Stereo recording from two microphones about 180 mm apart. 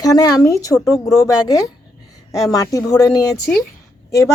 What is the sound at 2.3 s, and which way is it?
Speech, 20° left (ahead or behind).